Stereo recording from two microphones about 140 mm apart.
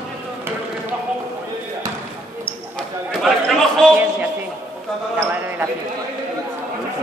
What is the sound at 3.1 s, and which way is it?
Chatter, 5° left (ahead or behind).